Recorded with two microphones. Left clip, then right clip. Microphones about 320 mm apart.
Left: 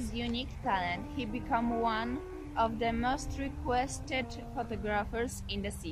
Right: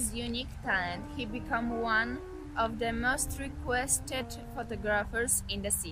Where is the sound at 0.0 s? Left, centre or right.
Right.